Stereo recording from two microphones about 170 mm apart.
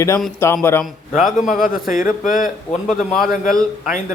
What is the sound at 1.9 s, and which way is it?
Speech, 50° left (ahead or behind).